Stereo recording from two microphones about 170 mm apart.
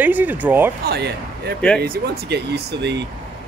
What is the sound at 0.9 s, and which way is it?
Speech, 75° right (ahead or behind).